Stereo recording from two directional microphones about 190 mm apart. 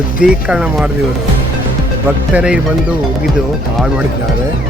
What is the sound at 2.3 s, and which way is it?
Speech, 5° right (ahead or behind).